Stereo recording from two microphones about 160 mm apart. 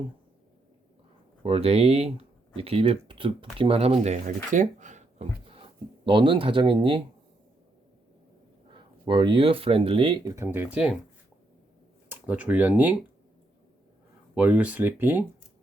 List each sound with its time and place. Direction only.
1.4 s speech: 35° right (ahead or behind)
8.7 s speech: 30° right (ahead or behind); by 10.7 s 15° right (ahead or behind)
12.1 s speech: 10° right (ahead or behind)
14.3 s speech: 10° right (ahead or behind)